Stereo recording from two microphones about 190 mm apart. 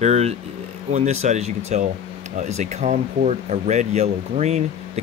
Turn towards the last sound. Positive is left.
turn(degrees=-35)  # may be behind; listen again after turning